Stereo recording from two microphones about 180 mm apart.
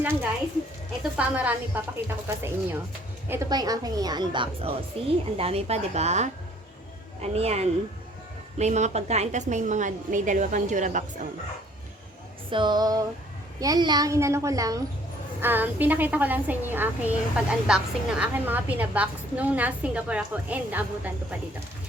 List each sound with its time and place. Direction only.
0.0 s a woman's voice: 10° right (ahead or behind); by 11.0 s 45° right (ahead or behind)
12.5 s a woman's voice: 25° right (ahead or behind); by 21.3 s 10° right (ahead or behind)